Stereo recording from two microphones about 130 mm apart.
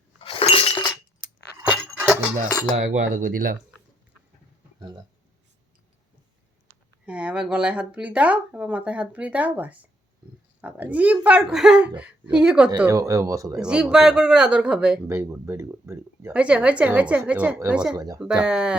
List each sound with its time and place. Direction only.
0.2 s chink: 45° left (ahead or behind)
1.7 s dog: 10° right (ahead or behind)
2.7 s speech: 75° right (ahead or behind)
6.7 s speech: 10° right (ahead or behind)
12.9 s speech: 25° right (ahead or behind)
13.6 s speech: 5° right (ahead or behind)
15.0 s speech: 20° right (ahead or behind)
17.9 s speech: 30° right (ahead or behind)
18.2 s speech: 5° right (ahead or behind)